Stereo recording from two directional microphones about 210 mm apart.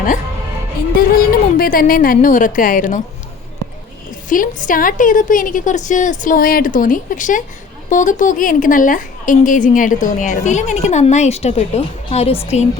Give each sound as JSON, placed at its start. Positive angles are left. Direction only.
{"t": 0.9, "sound": "a woman's voice", "side_deg": 45}
{"t": 4.3, "sound": "a woman's voice", "side_deg": 40}